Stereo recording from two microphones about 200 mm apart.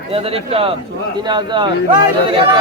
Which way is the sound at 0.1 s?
30° right (ahead or behind).